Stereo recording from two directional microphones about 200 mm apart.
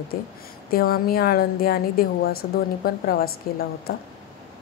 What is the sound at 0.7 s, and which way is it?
A woman's voice, 50° left (ahead or behind).